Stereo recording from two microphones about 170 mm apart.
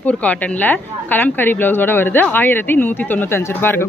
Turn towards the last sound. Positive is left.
turn(degrees=15)  # may be behind; listen again after turning